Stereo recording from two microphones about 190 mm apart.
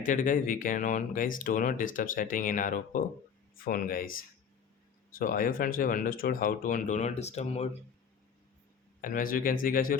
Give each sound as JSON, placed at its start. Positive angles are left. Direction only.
{"t": 0.0, "sound": "speech", "side_deg": 45}
{"t": 9.0, "sound": "speech", "side_deg": 45}